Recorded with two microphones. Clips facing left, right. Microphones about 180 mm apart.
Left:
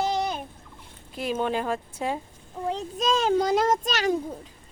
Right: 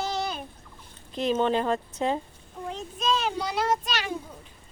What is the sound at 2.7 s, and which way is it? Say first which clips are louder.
A child's voice: left 2 dB; 40° left (ahead or behind).